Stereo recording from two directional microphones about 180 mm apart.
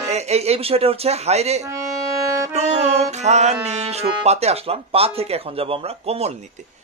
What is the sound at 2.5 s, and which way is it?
A man's voice, 35° right (ahead or behind).